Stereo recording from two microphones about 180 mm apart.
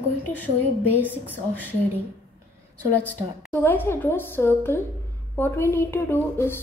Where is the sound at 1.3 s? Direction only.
10° left (ahead or behind).